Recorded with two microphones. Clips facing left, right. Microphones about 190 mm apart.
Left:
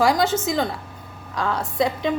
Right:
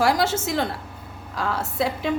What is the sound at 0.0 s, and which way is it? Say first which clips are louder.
A woman's voice: left 2 dB; 5° right (ahead or behind).